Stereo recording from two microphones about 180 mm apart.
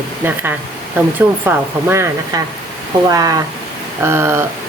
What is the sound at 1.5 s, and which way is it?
Speech, 15° right (ahead or behind).